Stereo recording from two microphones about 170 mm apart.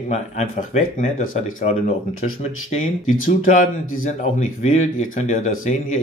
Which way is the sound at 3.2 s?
50° left (ahead or behind).